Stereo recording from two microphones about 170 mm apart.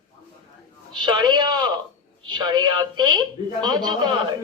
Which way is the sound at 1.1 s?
25° right (ahead or behind).